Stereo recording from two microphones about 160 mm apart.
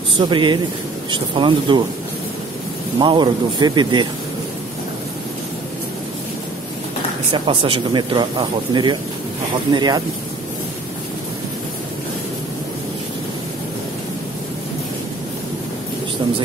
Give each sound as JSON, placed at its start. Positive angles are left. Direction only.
{"t": 0.3, "sound": "speech", "side_deg": -30}
{"t": 3.0, "sound": "speech", "side_deg": -30}
{"t": 7.3, "sound": "speech", "side_deg": -35}